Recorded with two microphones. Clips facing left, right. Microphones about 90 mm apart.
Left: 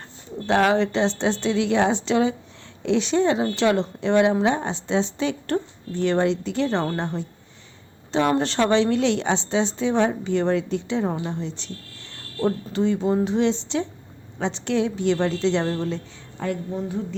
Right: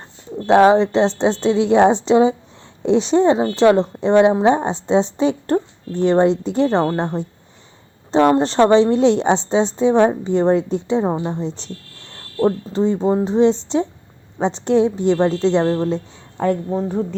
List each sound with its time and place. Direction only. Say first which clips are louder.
0.4 s a woman's voice: right 8 dB; 30° right (ahead or behind); by 17.2 s 45° right (ahead or behind)